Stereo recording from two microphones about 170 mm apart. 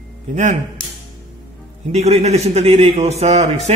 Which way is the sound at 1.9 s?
40° right (ahead or behind).